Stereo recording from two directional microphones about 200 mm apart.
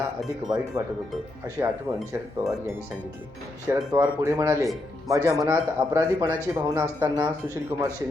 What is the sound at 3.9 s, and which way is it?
A man's voice, 15° right (ahead or behind).